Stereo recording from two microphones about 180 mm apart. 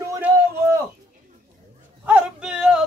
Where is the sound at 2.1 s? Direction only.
5° right (ahead or behind).